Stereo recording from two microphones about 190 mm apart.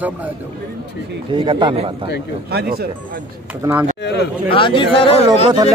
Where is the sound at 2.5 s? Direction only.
55° right (ahead or behind).